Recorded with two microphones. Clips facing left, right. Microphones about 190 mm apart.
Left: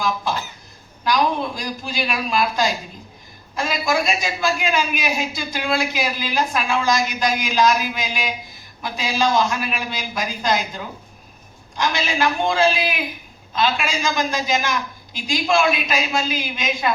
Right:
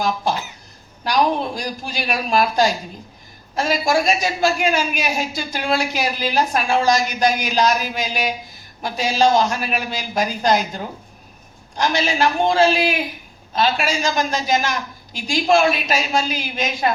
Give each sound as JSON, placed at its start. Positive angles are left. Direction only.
{"t": 1.0, "sound": "a woman's voice", "side_deg": -40}
{"t": 11.8, "sound": "a woman's voice", "side_deg": -40}